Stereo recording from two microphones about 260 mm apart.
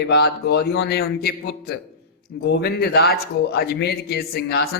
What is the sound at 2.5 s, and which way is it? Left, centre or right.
Speech, left.